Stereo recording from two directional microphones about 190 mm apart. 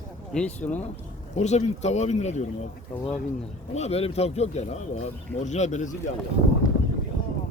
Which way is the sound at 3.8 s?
35° left (ahead or behind).